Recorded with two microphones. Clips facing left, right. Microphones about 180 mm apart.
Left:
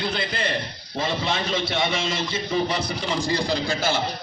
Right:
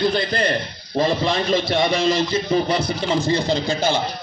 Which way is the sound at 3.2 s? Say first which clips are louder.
Right 4 dB; 20° right (ahead or behind).